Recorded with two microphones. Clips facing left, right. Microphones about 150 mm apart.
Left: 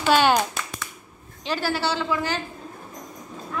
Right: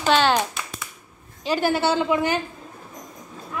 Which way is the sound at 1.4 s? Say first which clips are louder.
Right 4 dB; 15° right (ahead or behind).